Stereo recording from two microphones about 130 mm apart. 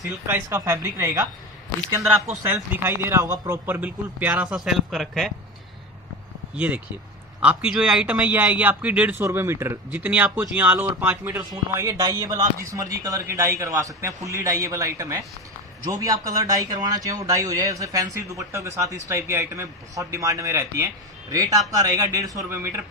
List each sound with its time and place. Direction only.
0.0 s speech: 25° right (ahead or behind)
2.4 s a man's voice: 15° right (ahead or behind); by 5.3 s centre (ahead or behind)
6.5 s a man's voice: 10° right (ahead or behind)